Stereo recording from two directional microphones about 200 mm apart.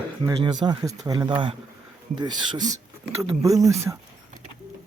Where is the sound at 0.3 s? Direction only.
20° right (ahead or behind).